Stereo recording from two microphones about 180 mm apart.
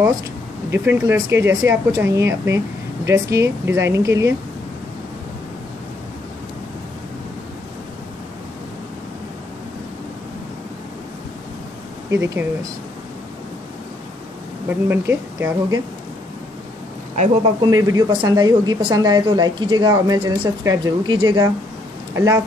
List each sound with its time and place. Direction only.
0.7 s speech: 15° right (ahead or behind)
12.1 s speech: 15° right (ahead or behind)
14.7 s speech: 10° right (ahead or behind)
17.1 s speech: 40° right (ahead or behind)
17.6 s speech: 20° right (ahead or behind)